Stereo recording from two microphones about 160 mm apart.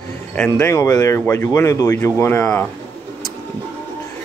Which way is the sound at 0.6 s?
20° left (ahead or behind).